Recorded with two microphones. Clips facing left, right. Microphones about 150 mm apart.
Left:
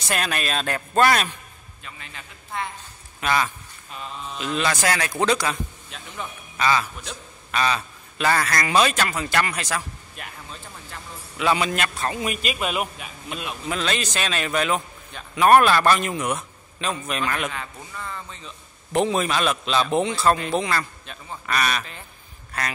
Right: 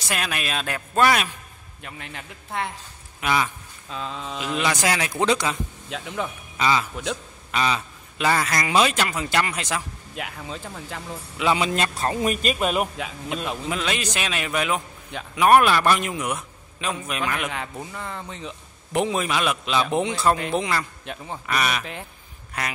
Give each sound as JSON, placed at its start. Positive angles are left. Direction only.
{"t": 0.1, "sound": "a man's voice", "side_deg": -5}
{"t": 1.8, "sound": "a man's voice", "side_deg": -65}
{"t": 3.2, "sound": "speech", "side_deg": -10}
{"t": 4.0, "sound": "speech", "side_deg": -90}
{"t": 4.4, "sound": "a man's voice", "side_deg": -15}
{"t": 5.9, "sound": "speech", "side_deg": -90}
{"t": 6.5, "sound": "a man's voice", "side_deg": -20}
{"t": 10.1, "sound": "speech", "side_deg": -90}
{"t": 11.3, "sound": "a man's voice", "side_deg": -20}
{"t": 13.7, "sound": "a man's voice", "side_deg": -10}
{"t": 17.9, "sound": "a man's voice", "side_deg": -60}
{"t": 18.9, "sound": "a man's voice", "side_deg": -10}
{"t": 21.0, "sound": "a man's voice", "side_deg": -65}
{"t": 21.5, "sound": "a man's voice", "side_deg": -15}